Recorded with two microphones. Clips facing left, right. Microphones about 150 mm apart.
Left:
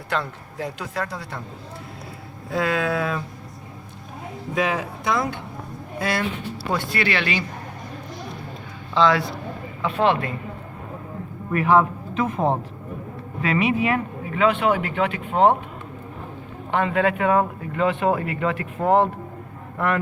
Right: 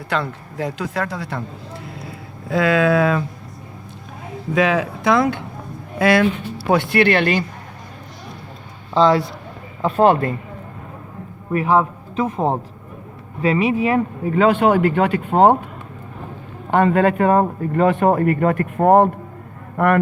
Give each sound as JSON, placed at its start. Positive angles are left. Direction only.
{"t": 0.1, "sound": "speech", "side_deg": -90}
{"t": 2.5, "sound": "speech", "side_deg": -90}
{"t": 4.5, "sound": "speech", "side_deg": -90}
{"t": 6.0, "sound": "speech", "side_deg": -70}
{"t": 9.0, "sound": "speech", "side_deg": -35}
{"t": 11.5, "sound": "speech", "side_deg": -35}
{"t": 13.4, "sound": "speech", "side_deg": -35}
{"t": 16.7, "sound": "speech", "side_deg": -45}